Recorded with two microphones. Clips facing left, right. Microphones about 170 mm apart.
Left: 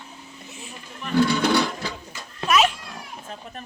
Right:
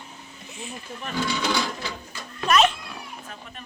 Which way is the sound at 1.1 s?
60° left (ahead or behind).